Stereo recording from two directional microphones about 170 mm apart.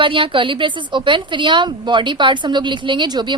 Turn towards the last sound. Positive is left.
turn(degrees=-25)  # may be behind; listen again after turning